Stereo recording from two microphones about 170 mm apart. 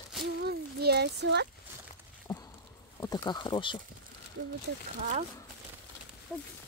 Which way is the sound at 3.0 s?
20° left (ahead or behind).